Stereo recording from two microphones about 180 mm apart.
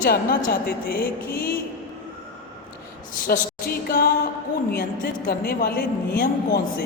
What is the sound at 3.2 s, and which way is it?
Music, 55° left (ahead or behind).